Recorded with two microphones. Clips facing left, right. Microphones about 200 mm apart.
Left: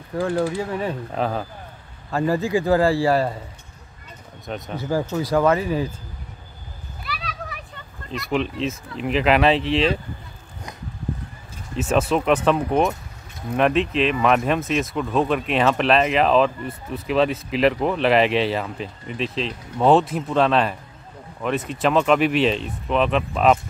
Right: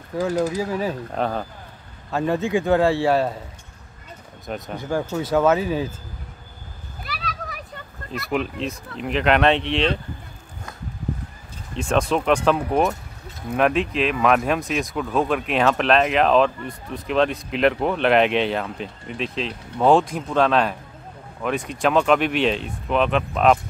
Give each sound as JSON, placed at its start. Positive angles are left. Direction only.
{"t": 0.1, "sound": "speech", "side_deg": 0}
{"t": 4.5, "sound": "speech", "side_deg": 0}
{"t": 7.1, "sound": "a sound", "side_deg": -40}
{"t": 8.2, "sound": "speech", "side_deg": 0}
{"t": 11.7, "sound": "speech", "side_deg": 5}